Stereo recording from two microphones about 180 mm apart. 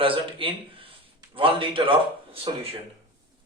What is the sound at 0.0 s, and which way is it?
A man's voice, 30° right (ahead or behind).